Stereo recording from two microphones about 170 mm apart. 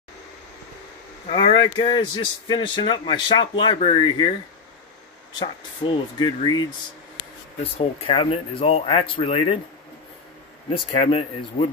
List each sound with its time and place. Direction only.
1.3 s a man's voice: 30° left (ahead or behind)
5.4 s a man's voice: 30° left (ahead or behind)
7.6 s speech: 35° left (ahead or behind)
10.9 s speech: 35° left (ahead or behind)